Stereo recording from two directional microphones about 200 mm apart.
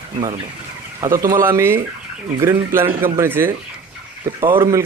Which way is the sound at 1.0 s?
15° right (ahead or behind).